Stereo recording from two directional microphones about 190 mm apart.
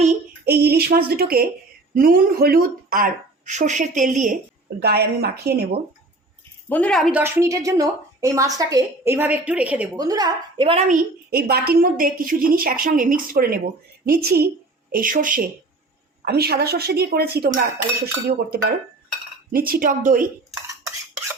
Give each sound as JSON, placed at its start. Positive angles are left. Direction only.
{"t": 0.4, "sound": "a woman's voice", "side_deg": -55}
{"t": 4.8, "sound": "a woman's voice", "side_deg": -55}
{"t": 6.7, "sound": "a woman's voice", "side_deg": 5}
{"t": 7.2, "sound": "a woman's voice", "side_deg": -15}
{"t": 9.9, "sound": "a woman's voice", "side_deg": -20}
{"t": 14.9, "sound": "a woman's voice", "side_deg": -45}
{"t": 16.2, "sound": "a woman's voice", "side_deg": -55}